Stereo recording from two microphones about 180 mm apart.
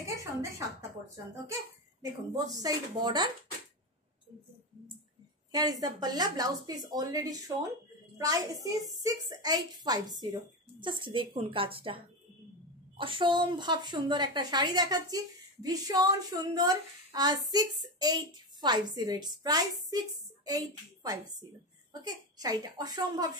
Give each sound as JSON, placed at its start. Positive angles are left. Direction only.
{"t": 0.0, "sound": "a sound", "side_deg": -15}
{"t": 1.1, "sound": "a woman's voice", "side_deg": -15}
{"t": 5.5, "sound": "a woman's voice", "side_deg": -20}